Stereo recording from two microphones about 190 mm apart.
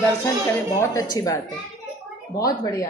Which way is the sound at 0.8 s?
20° left (ahead or behind).